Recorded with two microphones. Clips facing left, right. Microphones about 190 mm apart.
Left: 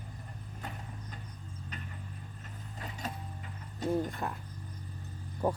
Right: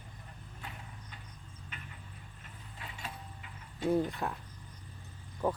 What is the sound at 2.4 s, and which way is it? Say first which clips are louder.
Vehicle: left 4 dB; 40° left (ahead or behind).